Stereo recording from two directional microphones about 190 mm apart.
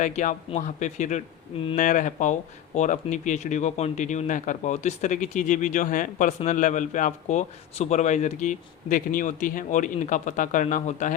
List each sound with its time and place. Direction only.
0.0 s a man's voice: 40° left (ahead or behind)